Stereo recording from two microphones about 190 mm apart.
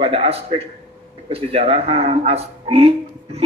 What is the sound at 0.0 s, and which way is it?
A man's voice, 30° right (ahead or behind).